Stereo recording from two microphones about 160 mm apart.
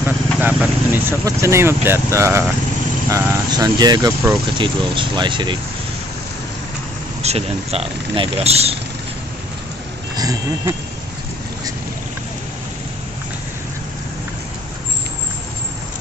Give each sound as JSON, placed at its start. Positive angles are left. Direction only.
{"t": 0.0, "sound": "speech", "side_deg": -10}
{"t": 7.2, "sound": "speech", "side_deg": -40}
{"t": 10.1, "sound": "speech", "side_deg": -20}